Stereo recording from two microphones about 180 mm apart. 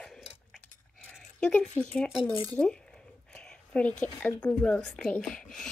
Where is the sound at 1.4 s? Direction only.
5° left (ahead or behind).